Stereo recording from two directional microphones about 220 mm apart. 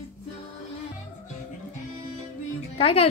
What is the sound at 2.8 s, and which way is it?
Speech, 25° left (ahead or behind).